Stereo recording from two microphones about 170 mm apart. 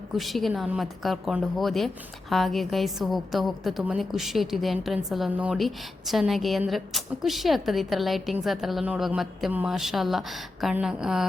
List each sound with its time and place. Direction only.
0.2 s a woman's voice: centre (ahead or behind)